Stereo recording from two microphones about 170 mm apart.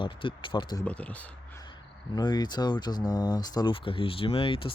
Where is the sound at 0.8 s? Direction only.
5° left (ahead or behind).